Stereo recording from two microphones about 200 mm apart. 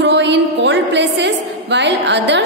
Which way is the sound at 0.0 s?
60° right (ahead or behind).